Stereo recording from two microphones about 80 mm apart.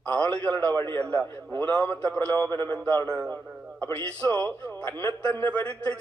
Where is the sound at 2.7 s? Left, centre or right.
Centre.